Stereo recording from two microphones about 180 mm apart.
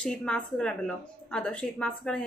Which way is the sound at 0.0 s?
5° left (ahead or behind).